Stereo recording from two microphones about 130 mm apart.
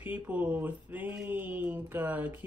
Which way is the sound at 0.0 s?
15° right (ahead or behind).